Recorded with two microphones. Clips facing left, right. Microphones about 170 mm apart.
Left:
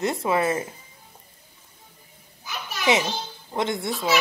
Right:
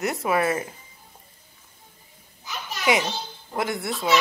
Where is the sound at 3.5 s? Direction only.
25° left (ahead or behind).